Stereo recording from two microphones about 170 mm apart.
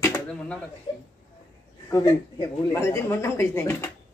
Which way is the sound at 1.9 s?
20° left (ahead or behind).